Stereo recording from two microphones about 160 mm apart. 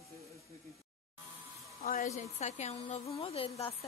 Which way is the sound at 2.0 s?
45° left (ahead or behind).